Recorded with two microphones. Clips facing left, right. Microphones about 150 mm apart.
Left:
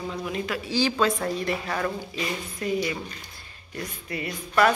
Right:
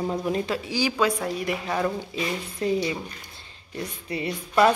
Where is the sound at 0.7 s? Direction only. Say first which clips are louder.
Left 2 dB; 10° right (ahead or behind).